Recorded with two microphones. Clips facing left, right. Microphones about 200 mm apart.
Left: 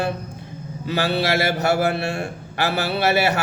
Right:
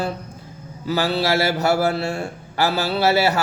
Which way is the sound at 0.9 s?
25° left (ahead or behind).